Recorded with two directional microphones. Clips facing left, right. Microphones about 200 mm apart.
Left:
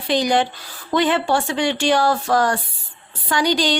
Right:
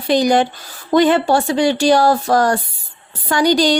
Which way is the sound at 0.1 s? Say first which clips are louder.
Right 4 dB; 45° right (ahead or behind).